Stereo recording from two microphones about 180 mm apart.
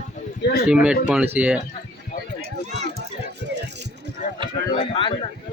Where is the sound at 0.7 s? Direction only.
5° right (ahead or behind).